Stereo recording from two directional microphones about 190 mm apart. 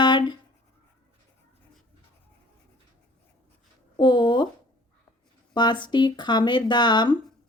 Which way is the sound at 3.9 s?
25° left (ahead or behind).